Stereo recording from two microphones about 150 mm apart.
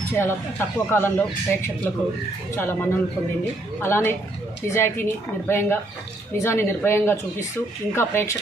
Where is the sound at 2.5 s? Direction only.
15° left (ahead or behind).